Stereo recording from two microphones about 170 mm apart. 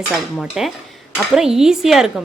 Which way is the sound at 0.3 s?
Centre (ahead or behind).